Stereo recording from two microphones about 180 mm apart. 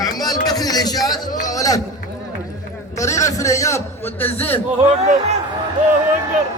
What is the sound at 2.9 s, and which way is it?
A man's voice, 15° left (ahead or behind).